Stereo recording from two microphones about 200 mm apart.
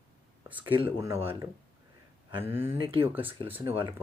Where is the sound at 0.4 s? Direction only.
10° right (ahead or behind).